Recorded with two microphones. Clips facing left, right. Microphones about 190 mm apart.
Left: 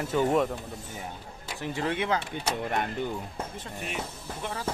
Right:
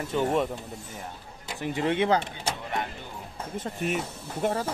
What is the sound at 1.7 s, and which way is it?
Speech, 25° right (ahead or behind).